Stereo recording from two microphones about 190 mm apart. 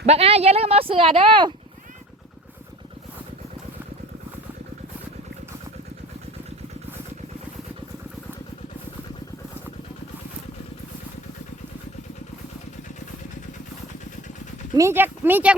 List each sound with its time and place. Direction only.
0.0 s speech: 35° right (ahead or behind)
14.8 s speech: 10° right (ahead or behind)